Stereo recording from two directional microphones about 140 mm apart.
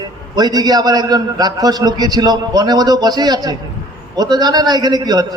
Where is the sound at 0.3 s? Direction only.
30° right (ahead or behind).